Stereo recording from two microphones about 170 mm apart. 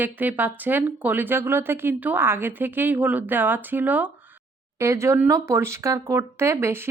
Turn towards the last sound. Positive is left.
turn(degrees=-15)  # may be behind; listen again after turning